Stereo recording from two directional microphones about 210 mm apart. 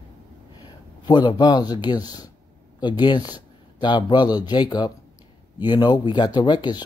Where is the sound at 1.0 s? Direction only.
20° left (ahead or behind).